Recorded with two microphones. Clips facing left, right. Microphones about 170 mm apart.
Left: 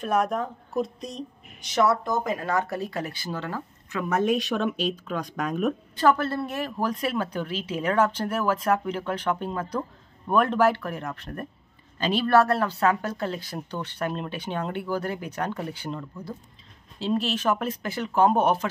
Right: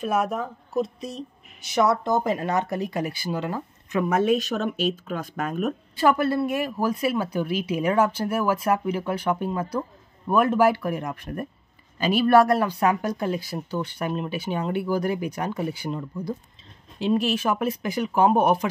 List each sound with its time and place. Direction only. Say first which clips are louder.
0.0 s a woman's voice: even; 5° right (ahead or behind)
1.8 s speech: right 2 dB; 20° right (ahead or behind)
4.5 s speech: right 1 dB; 40° right (ahead or behind)
5.3 s speech: left 1 dB; 5° right (ahead or behind)